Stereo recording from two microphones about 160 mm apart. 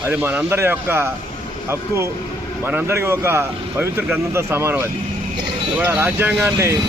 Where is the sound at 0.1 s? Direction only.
10° right (ahead or behind).